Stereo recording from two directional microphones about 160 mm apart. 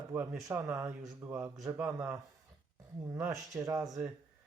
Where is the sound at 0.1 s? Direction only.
15° right (ahead or behind).